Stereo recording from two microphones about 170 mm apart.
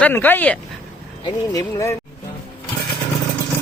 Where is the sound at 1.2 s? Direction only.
20° left (ahead or behind).